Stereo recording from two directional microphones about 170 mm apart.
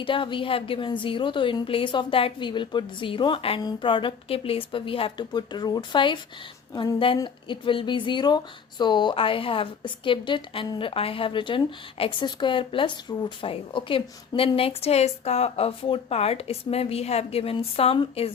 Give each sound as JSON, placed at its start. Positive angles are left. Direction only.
{"t": 0.0, "sound": "a woman's voice", "side_deg": 30}